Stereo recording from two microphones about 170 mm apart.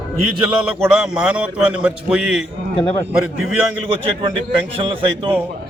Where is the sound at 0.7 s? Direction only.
Centre (ahead or behind).